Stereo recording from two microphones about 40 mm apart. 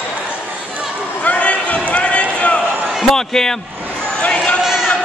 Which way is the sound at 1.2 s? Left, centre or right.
Left.